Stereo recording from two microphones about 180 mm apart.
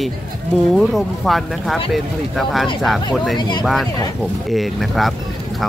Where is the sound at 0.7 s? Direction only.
Centre (ahead or behind).